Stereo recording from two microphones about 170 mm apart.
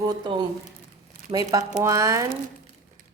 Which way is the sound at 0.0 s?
25° right (ahead or behind).